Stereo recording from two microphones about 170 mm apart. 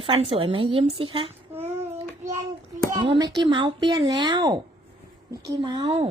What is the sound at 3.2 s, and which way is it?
Speech, 25° right (ahead or behind).